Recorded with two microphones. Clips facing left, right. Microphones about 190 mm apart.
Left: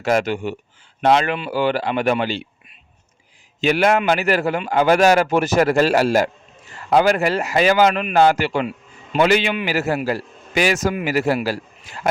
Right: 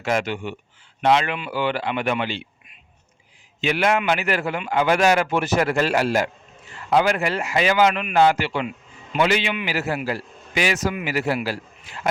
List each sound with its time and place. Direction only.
0.0 s a man's voice: 40° left (ahead or behind)